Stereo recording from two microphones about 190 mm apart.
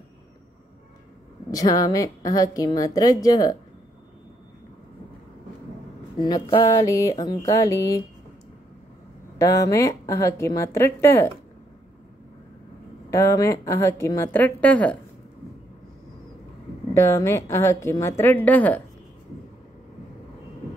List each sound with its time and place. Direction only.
1.5 s a woman's voice: 20° left (ahead or behind)
6.1 s a woman's voice: 25° left (ahead or behind)
9.4 s a woman's voice: 15° left (ahead or behind)
13.1 s a woman's voice: 15° left (ahead or behind)
16.9 s a woman's voice: 15° left (ahead or behind)